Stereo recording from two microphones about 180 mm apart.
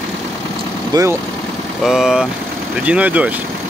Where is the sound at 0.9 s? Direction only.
15° right (ahead or behind).